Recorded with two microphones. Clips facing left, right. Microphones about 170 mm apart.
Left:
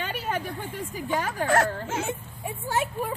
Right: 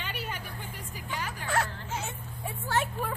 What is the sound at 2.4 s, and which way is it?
Speech, 10° left (ahead or behind).